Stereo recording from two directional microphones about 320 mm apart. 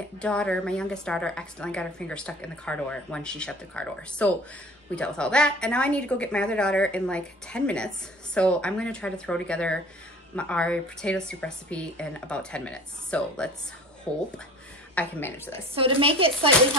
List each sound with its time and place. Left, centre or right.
0.2 s a woman's voice: centre
15.7 s a woman's voice: centre